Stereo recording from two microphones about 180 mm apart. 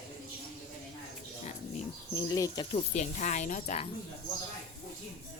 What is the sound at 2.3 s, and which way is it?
Speech, 20° left (ahead or behind).